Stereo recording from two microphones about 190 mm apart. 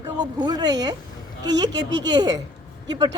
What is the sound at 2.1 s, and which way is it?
Speech, 20° right (ahead or behind).